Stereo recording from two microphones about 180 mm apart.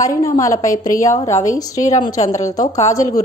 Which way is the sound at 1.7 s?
40° left (ahead or behind).